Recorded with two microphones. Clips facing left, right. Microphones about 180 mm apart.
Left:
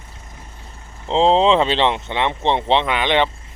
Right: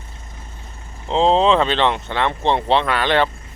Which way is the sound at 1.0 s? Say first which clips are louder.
Left 1 dB; 25° left (ahead or behind).